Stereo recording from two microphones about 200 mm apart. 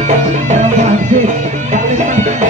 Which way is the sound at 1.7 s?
40° right (ahead or behind).